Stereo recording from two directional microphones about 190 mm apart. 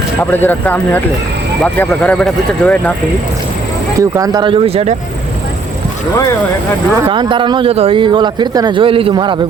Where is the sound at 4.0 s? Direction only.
20° right (ahead or behind).